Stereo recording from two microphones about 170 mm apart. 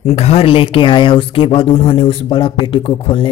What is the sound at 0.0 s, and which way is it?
Speech, 40° left (ahead or behind).